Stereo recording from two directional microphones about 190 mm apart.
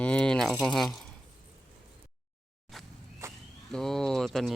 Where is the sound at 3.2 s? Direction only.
15° right (ahead or behind).